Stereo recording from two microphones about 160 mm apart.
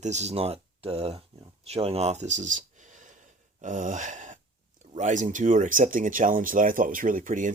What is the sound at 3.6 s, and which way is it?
Gasp, 50° right (ahead or behind).